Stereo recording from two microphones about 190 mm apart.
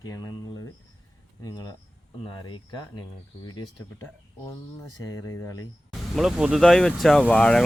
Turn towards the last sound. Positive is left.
turn(degrees=5)  # may be behind; listen again after turning